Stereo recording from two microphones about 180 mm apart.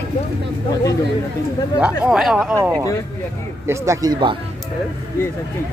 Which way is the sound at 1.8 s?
5° right (ahead or behind).